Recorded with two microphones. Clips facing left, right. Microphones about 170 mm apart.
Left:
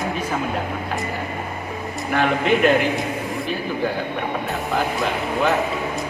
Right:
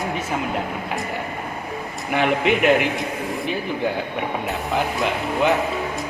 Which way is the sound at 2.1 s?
15° right (ahead or behind).